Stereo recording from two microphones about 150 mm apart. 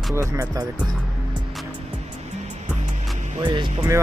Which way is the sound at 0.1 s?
20° right (ahead or behind).